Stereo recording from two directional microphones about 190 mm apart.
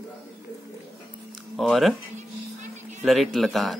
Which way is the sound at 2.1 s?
40° right (ahead or behind).